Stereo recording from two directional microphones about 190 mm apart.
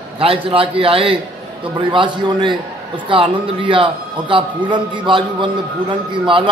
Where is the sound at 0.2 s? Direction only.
30° right (ahead or behind).